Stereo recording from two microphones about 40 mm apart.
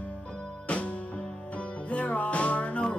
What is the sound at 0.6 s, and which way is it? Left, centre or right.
Music, left.